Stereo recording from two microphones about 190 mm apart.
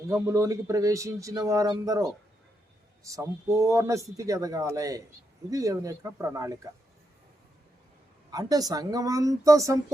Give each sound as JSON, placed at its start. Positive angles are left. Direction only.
{"t": 0.1, "sound": "speech", "side_deg": -15}
{"t": 8.3, "sound": "speech", "side_deg": -20}